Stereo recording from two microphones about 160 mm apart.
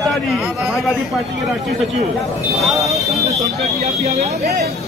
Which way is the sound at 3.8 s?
40° right (ahead or behind).